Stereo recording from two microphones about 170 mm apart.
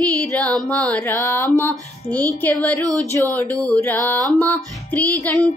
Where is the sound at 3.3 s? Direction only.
10° left (ahead or behind).